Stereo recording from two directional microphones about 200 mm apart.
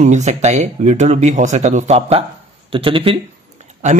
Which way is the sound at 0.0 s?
35° right (ahead or behind).